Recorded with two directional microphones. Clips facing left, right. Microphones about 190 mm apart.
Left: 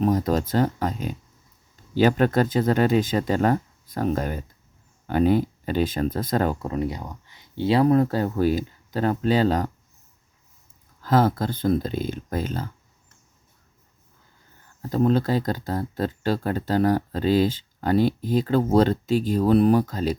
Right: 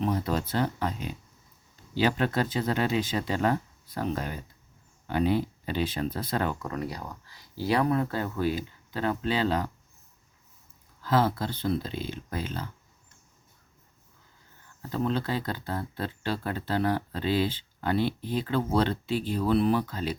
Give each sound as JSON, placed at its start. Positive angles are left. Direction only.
{"t": 0.0, "sound": "speech", "side_deg": 40}
{"t": 6.7, "sound": "speech", "side_deg": 25}
{"t": 11.0, "sound": "speech", "side_deg": 45}
{"t": 14.8, "sound": "speech", "side_deg": 40}